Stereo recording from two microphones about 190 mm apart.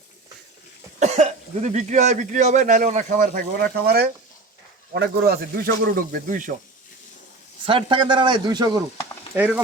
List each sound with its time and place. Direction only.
0.9 s speech: 35° right (ahead or behind)
7.6 s a man's voice: 25° right (ahead or behind)
9.3 s speech: 10° right (ahead or behind)